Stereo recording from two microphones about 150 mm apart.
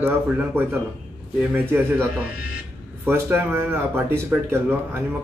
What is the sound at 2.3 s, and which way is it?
Speech, 90° left.